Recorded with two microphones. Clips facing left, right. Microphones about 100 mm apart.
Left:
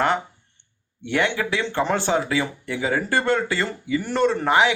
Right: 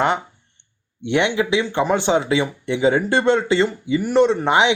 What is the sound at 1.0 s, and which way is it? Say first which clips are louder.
A man's voice: right 4 dB; 20° right (ahead or behind).